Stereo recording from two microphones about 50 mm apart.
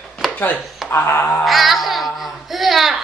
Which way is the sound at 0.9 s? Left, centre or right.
Left.